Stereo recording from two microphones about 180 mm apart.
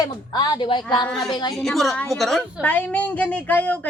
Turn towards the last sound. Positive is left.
turn(degrees=10)  # may be behind; listen again after turning